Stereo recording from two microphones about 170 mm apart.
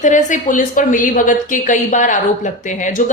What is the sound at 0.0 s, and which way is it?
A woman's voice, 45° left (ahead or behind).